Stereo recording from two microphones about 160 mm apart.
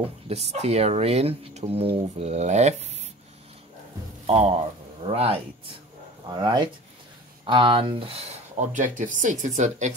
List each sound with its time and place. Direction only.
0.0 s speech: 40° right (ahead or behind)
4.3 s speech: 40° right (ahead or behind)